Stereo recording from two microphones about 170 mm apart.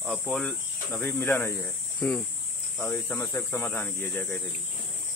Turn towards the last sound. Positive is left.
turn(degrees=10)  # may be behind; listen again after turning